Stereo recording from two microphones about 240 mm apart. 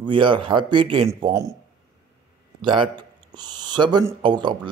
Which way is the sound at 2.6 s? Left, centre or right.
Centre.